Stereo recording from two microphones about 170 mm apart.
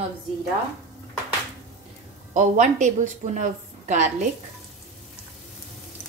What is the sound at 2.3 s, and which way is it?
A woman's voice, 45° right (ahead or behind).